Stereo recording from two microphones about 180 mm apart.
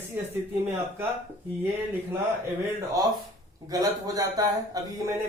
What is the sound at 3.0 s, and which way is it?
Speech, 20° right (ahead or behind).